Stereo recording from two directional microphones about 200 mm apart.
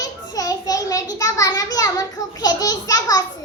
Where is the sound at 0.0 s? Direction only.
20° left (ahead or behind).